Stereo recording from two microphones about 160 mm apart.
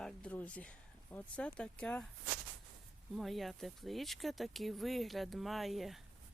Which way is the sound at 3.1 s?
Centre (ahead or behind).